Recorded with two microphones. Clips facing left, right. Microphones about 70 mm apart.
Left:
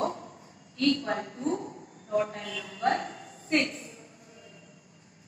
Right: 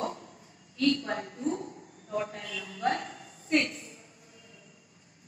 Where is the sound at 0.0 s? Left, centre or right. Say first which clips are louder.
Left 4 dB; left.